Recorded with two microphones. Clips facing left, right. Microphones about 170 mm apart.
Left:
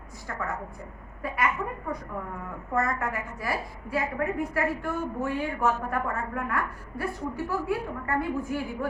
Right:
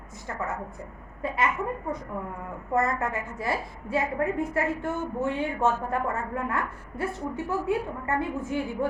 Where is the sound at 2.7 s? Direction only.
25° right (ahead or behind).